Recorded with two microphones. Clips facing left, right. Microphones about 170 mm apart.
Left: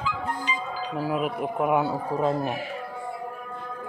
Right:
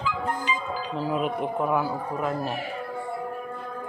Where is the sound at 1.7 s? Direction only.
25° left (ahead or behind).